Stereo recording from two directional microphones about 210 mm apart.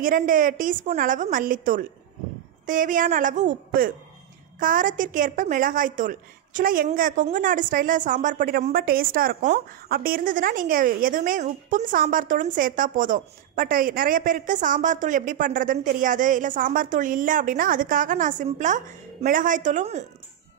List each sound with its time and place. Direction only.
0.0 s a woman's voice: 40° right (ahead or behind)